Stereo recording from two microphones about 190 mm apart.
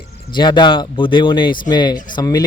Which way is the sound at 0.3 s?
25° left (ahead or behind).